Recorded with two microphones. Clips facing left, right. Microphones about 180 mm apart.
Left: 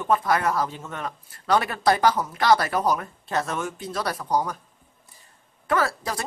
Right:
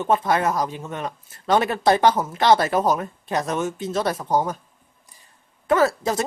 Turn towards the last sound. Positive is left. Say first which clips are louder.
# right 6 dB
turn(degrees=-25)  # may be behind; listen again after turning